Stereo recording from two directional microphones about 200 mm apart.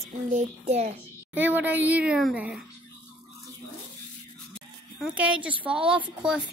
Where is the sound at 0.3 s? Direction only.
35° right (ahead or behind).